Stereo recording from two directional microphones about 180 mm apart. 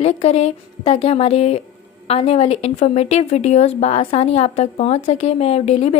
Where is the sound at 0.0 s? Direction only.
35° left (ahead or behind).